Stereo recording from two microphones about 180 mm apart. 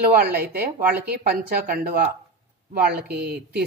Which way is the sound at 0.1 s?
55° right (ahead or behind).